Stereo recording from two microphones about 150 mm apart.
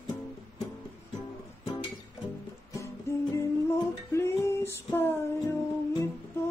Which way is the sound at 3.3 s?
15° left (ahead or behind).